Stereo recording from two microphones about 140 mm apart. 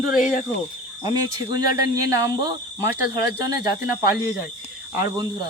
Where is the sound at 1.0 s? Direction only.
25° right (ahead or behind).